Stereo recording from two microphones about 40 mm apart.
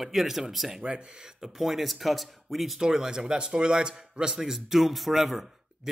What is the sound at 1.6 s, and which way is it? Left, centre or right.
Speech, centre.